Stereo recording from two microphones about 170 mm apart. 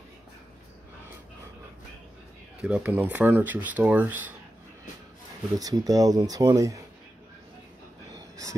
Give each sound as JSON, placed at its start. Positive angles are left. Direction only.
{"t": 2.6, "sound": "speech", "side_deg": -5}
{"t": 5.6, "sound": "speech", "side_deg": -20}